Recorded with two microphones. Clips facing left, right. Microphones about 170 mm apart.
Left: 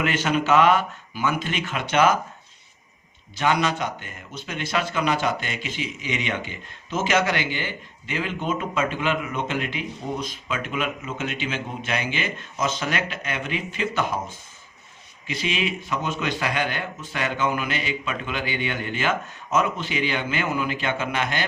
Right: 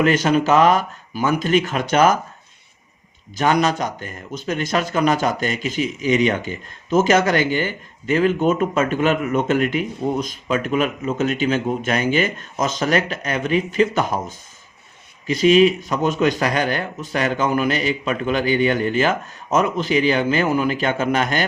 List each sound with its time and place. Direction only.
0.0 s speech: 40° right (ahead or behind)
3.3 s a man's voice: 45° right (ahead or behind)